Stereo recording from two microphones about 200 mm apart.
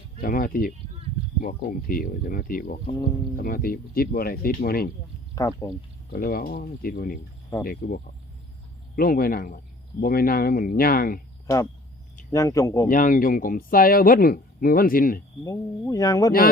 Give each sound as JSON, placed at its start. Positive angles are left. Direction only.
{"t": 0.2, "sound": "speech", "side_deg": 45}
{"t": 5.3, "sound": "speech", "side_deg": 15}
{"t": 6.1, "sound": "speech", "side_deg": 45}
{"t": 11.4, "sound": "speech", "side_deg": 15}
{"t": 12.9, "sound": "speech", "side_deg": 45}
{"t": 15.4, "sound": "speech", "side_deg": 15}